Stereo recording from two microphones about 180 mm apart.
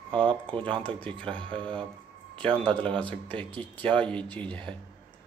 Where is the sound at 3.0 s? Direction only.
10° left (ahead or behind).